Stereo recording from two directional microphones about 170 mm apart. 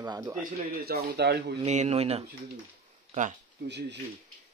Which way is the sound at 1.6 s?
40° right (ahead or behind).